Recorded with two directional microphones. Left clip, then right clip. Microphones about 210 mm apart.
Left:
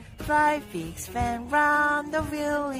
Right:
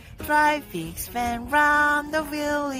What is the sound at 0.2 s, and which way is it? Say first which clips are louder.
Music: right 2 dB; 5° right (ahead or behind).